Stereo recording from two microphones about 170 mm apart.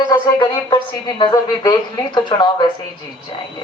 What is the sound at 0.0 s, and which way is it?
A woman's voice, 25° left (ahead or behind).